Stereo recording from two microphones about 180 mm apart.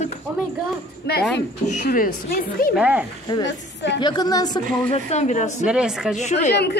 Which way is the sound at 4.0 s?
25° left (ahead or behind).